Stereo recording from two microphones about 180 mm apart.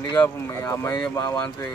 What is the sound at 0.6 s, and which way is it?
Speech, 15° left (ahead or behind).